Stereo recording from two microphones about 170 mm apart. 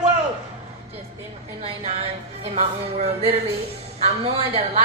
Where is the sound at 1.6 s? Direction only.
35° right (ahead or behind).